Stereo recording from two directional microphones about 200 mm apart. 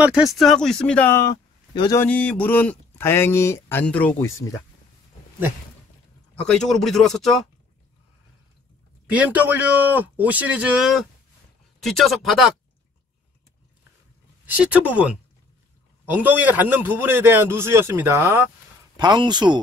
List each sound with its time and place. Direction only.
0.0 s speech: 5° right (ahead or behind); by 2.0 s 15° left (ahead or behind)
2.0 s speech: 5° left (ahead or behind)
6.4 s speech: centre (ahead or behind)
9.1 s a man's voice: 5° right (ahead or behind)
14.4 s speech: 10° right (ahead or behind)
16.1 s a man's voice: 10° right (ahead or behind)